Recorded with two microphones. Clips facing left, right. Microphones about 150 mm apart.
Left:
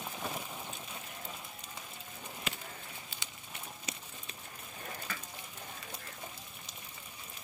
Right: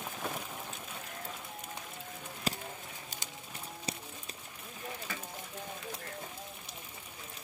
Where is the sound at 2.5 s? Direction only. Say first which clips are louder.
Right 7 dB; 35° right (ahead or behind).